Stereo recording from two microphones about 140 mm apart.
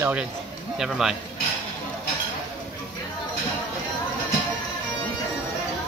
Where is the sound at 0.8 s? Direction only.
5° right (ahead or behind).